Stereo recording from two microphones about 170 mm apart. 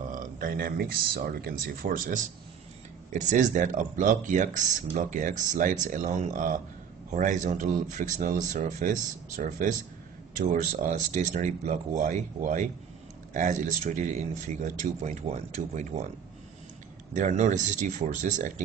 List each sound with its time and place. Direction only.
0.1 s speech: 55° right (ahead or behind)
17.1 s speech: 45° right (ahead or behind)